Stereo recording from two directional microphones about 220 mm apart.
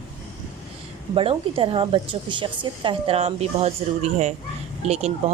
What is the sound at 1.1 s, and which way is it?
Speech, 25° right (ahead or behind).